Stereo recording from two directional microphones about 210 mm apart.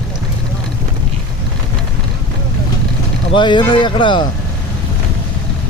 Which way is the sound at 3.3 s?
20° left (ahead or behind).